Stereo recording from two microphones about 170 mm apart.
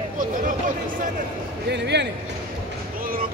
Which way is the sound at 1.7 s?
90° right.